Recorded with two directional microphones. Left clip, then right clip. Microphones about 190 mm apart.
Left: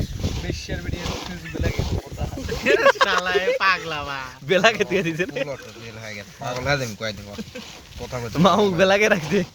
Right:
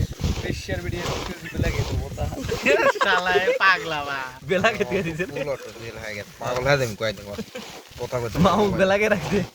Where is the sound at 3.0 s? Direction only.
10° right (ahead or behind).